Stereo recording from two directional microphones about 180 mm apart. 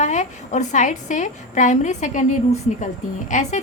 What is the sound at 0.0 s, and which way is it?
A woman's voice, 40° left (ahead or behind).